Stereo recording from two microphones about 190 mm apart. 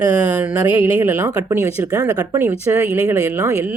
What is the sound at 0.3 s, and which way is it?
Speech, 5° right (ahead or behind).